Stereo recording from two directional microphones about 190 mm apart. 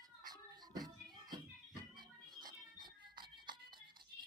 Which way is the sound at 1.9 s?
25° right (ahead or behind).